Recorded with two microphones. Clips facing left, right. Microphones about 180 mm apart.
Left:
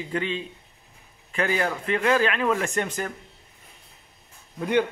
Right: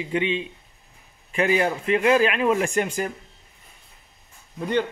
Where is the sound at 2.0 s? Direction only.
25° right (ahead or behind).